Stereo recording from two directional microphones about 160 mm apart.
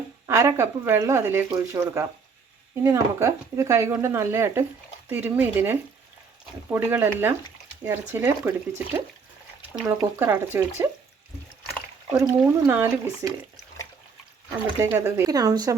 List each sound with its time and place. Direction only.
0.3 s speech: 15° right (ahead or behind)
12.1 s speech: 20° right (ahead or behind)
14.8 s speech: 15° right (ahead or behind)